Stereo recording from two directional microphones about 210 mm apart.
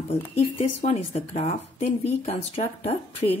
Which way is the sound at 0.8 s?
30° left (ahead or behind).